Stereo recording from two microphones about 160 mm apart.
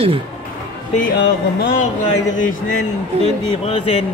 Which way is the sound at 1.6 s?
65° left (ahead or behind).